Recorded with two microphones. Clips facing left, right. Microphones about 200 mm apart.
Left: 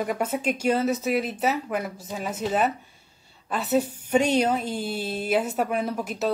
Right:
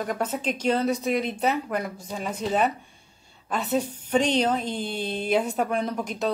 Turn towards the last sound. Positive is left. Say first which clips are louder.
# even
turn(degrees=5)  # may be behind; listen again after turning